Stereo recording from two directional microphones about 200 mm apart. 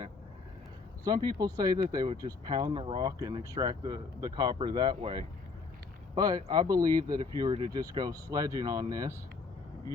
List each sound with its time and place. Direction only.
1.0 s speech: 20° right (ahead or behind)